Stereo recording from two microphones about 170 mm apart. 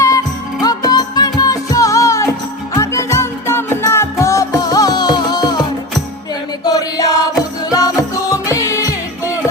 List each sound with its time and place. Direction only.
0.6 s music: 20° left (ahead or behind)
6.7 s chant: 20° left (ahead or behind)
7.7 s music: 20° left (ahead or behind)